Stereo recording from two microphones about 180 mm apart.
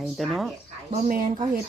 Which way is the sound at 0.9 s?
45° right (ahead or behind).